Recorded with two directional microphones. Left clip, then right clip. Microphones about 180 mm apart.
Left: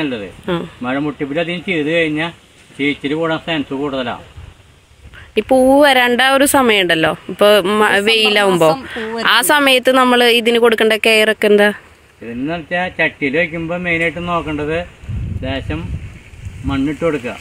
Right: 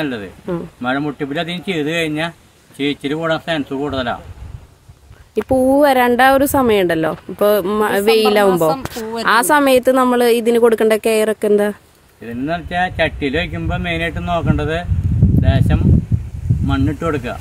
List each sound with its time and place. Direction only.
0.8 s a man's voice: 25° right (ahead or behind)
5.3 s speech: 5° right (ahead or behind)
8.6 s speech: 10° left (ahead or behind)
12.4 s a man's voice: 25° right (ahead or behind)